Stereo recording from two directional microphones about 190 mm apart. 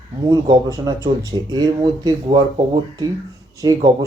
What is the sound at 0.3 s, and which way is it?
Speech, 20° right (ahead or behind).